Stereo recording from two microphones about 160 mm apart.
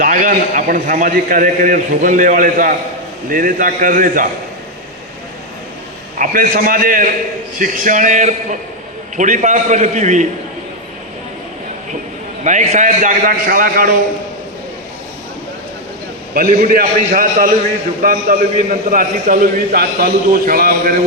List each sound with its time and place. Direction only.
0.0 s a man's voice: 55° right (ahead or behind)
6.1 s a man's voice: 60° right (ahead or behind)
12.5 s a man's voice: 50° right (ahead or behind)
16.3 s a man's voice: 60° right (ahead or behind)